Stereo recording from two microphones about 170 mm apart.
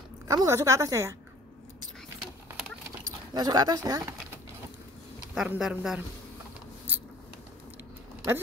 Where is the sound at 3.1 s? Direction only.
25° right (ahead or behind).